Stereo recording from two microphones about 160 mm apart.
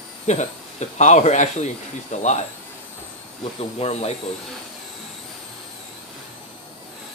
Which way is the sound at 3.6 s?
40° left (ahead or behind).